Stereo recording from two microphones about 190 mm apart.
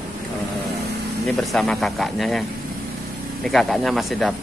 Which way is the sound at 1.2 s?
Centre (ahead or behind).